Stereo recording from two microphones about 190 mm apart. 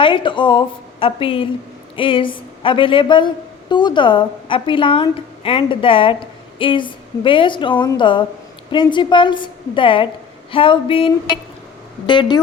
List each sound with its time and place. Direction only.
0.0 s a woman's voice: 25° left (ahead or behind)